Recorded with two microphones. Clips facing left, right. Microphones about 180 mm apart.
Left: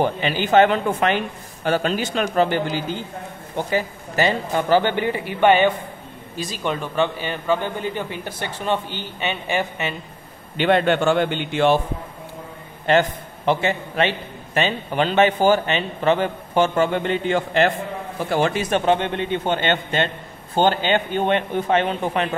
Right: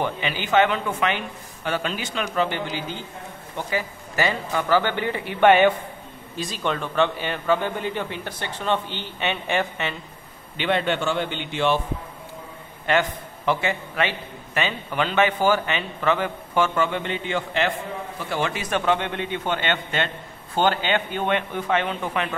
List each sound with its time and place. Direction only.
0.0 s a man's voice: 35° left (ahead or behind)
3.5 s a man's voice: 25° left (ahead or behind)
5.2 s a man's voice: centre (ahead or behind)
10.6 s a man's voice: 50° left (ahead or behind)
13.5 s a man's voice: 30° left (ahead or behind)
18.6 s a man's voice: 25° left (ahead or behind)